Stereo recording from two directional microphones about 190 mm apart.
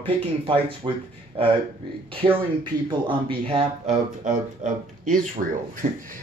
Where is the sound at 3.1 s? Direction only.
30° right (ahead or behind).